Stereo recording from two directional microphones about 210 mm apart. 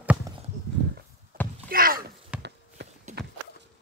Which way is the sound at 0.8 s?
60° right (ahead or behind).